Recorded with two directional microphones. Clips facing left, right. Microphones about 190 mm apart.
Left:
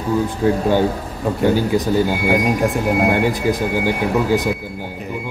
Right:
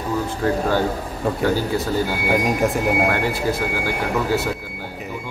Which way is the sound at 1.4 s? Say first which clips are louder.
Left 6 dB; 15° left (ahead or behind).